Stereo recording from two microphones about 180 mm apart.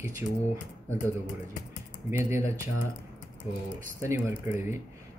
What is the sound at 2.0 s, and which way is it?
Speech, 15° right (ahead or behind).